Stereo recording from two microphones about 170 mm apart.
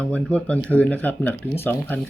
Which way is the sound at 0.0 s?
10° left (ahead or behind).